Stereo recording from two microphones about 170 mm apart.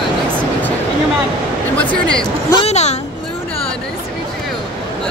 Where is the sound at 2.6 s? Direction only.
40° left (ahead or behind).